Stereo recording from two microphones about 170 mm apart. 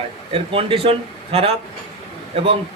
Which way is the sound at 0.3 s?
35° right (ahead or behind).